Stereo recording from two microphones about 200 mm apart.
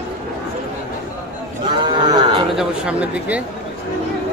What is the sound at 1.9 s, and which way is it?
Livestock, 20° right (ahead or behind).